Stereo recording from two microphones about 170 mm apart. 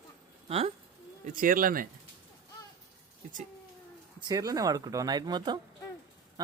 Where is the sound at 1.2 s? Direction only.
55° right (ahead or behind).